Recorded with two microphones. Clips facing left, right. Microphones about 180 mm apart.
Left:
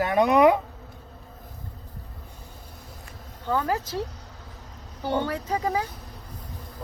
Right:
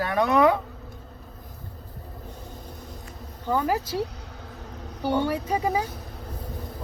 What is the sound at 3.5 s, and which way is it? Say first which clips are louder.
Speech: right 1 dB; 10° right (ahead or behind).